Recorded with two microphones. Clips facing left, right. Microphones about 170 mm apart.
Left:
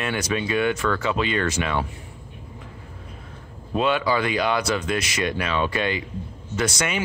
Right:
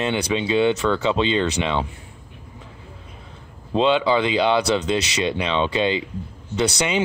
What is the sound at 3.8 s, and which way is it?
Speech, 20° right (ahead or behind).